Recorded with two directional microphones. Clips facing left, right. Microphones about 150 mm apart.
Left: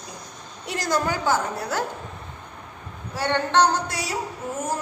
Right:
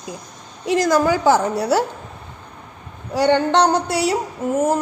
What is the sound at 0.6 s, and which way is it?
A woman's voice, 90° right.